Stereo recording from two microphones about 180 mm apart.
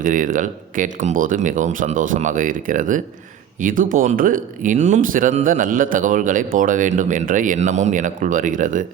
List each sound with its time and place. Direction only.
0.0 s speech: 45° right (ahead or behind)